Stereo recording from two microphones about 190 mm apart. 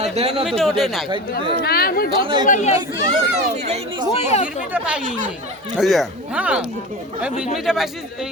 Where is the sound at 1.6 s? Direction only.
55° left (ahead or behind).